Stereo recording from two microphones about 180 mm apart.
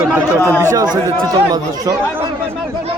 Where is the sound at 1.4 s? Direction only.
20° right (ahead or behind).